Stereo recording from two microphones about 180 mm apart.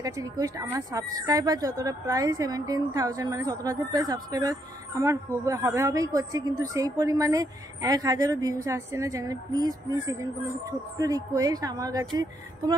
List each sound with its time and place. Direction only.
0.0 s a woman's voice: 20° right (ahead or behind)